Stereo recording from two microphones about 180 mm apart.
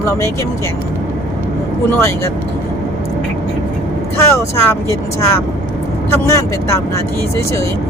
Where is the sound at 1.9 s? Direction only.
15° left (ahead or behind).